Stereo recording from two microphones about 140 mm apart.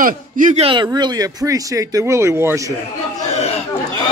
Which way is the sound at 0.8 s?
30° right (ahead or behind).